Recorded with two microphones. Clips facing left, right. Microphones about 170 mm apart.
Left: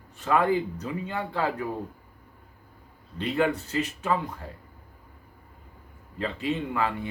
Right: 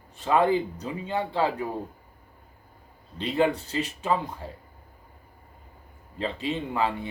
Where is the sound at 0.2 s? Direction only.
25° right (ahead or behind).